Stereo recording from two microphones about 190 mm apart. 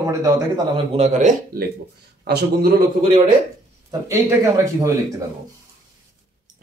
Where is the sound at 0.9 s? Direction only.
35° right (ahead or behind).